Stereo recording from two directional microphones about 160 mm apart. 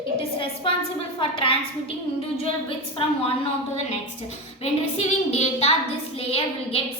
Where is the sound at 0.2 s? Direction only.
35° left (ahead or behind).